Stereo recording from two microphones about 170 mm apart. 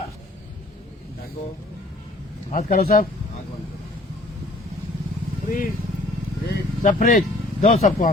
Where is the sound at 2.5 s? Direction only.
55° left (ahead or behind).